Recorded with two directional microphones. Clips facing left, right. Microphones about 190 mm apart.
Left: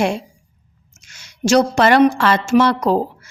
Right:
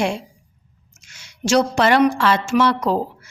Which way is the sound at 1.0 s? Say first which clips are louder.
Left 4 dB; 40° left (ahead or behind).